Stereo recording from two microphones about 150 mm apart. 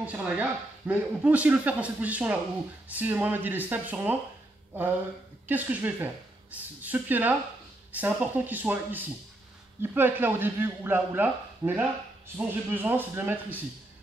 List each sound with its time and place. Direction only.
0.0 s speech: 10° right (ahead or behind)
5.5 s speech: 10° right (ahead or behind)